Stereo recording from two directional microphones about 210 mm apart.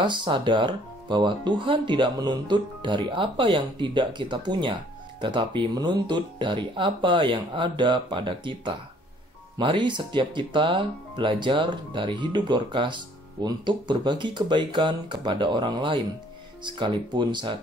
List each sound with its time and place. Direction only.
0.0 s speech: 20° right (ahead or behind)